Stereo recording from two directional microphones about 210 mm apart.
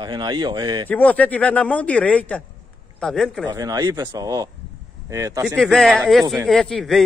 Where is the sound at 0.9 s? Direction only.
5° left (ahead or behind).